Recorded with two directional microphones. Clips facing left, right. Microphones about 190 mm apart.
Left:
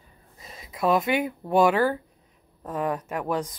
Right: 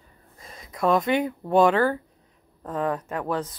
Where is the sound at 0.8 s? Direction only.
5° left (ahead or behind).